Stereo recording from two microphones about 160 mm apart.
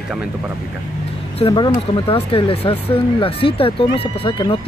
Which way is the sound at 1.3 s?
30° left (ahead or behind).